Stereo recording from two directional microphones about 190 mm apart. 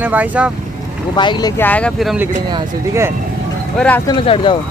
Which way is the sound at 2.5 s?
15° right (ahead or behind).